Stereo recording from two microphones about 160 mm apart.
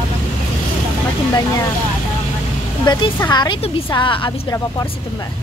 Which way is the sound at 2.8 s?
25° left (ahead or behind).